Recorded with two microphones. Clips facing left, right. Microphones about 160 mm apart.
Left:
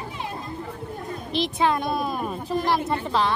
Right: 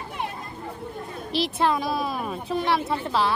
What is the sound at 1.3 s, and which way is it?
A woman's voice, centre (ahead or behind).